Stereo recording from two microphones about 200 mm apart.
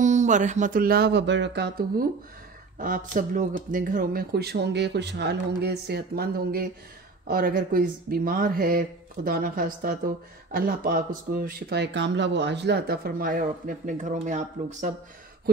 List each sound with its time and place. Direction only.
0.0 s speech: 35° right (ahead or behind)